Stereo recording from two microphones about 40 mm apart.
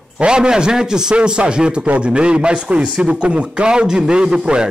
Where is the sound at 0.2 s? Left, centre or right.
Right.